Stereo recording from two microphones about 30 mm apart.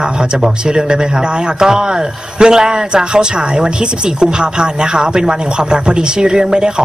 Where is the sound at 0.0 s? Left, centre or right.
Right.